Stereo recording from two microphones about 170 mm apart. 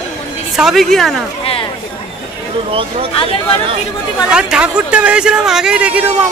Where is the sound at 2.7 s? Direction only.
30° right (ahead or behind).